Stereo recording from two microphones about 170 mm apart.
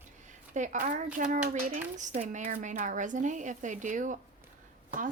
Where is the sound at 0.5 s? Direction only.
45° right (ahead or behind).